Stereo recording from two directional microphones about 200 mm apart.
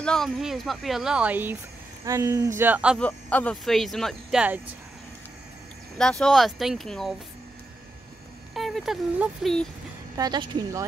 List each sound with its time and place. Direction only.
0.0 s speech: 5° left (ahead or behind)
3.0 s speech: 10° left (ahead or behind)
5.9 s speech: 5° left (ahead or behind)
8.5 s speech: centre (ahead or behind)
10.1 s speech: 20° right (ahead or behind)